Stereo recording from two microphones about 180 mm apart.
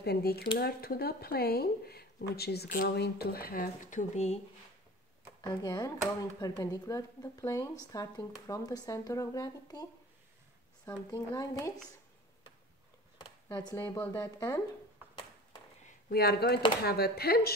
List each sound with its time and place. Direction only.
0.0 s speech: 65° left (ahead or behind); by 4.4 s 40° left (ahead or behind)
5.4 s speech: 25° left (ahead or behind)
10.9 s speech: 20° left (ahead or behind)
13.5 s speech: 20° left (ahead or behind)
16.1 s speech: 60° left (ahead or behind)